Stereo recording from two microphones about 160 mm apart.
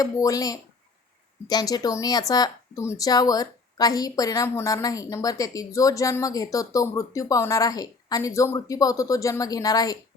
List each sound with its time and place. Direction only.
0.0 s speech: 20° left (ahead or behind)